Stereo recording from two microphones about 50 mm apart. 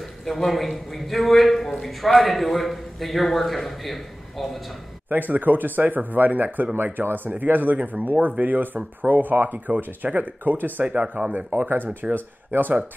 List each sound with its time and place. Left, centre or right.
0.2 s a man's voice: centre
5.1 s speech: right
11.5 s speech: right